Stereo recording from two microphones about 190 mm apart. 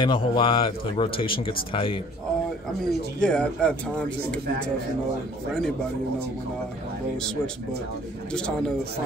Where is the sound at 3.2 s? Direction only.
5° left (ahead or behind).